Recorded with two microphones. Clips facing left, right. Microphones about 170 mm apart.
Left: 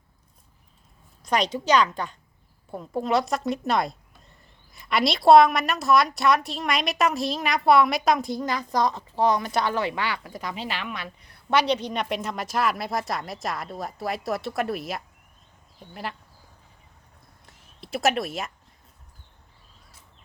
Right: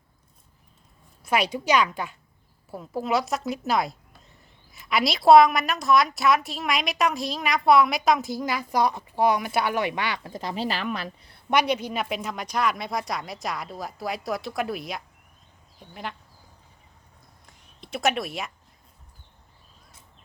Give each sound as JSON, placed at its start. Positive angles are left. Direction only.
{"t": 1.2, "sound": "a woman's voice", "side_deg": -5}
{"t": 10.5, "sound": "speech", "side_deg": -40}
{"t": 11.5, "sound": "a woman's voice", "side_deg": -10}
{"t": 17.4, "sound": "a sound", "side_deg": 0}